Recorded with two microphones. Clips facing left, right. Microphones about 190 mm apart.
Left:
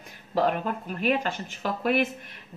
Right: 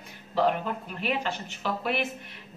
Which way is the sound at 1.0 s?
45° left (ahead or behind).